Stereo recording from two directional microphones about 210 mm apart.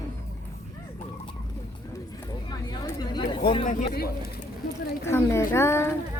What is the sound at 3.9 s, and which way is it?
Speech, 45° left (ahead or behind).